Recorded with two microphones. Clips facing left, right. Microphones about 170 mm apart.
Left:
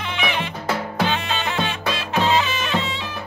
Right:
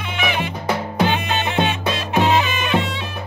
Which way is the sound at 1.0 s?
15° right (ahead or behind).